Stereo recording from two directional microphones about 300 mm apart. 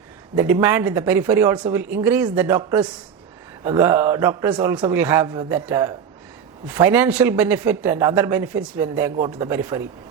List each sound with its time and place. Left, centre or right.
0.3 s speech: centre